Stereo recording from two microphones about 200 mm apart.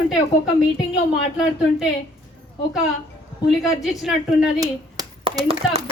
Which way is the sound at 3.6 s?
Centre (ahead or behind).